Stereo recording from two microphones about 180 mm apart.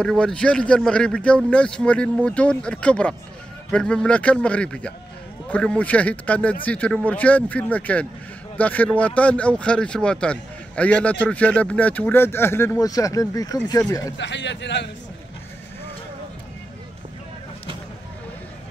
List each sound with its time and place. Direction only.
0.0 s speech: 5° left (ahead or behind)
14.1 s a man's voice: 80° left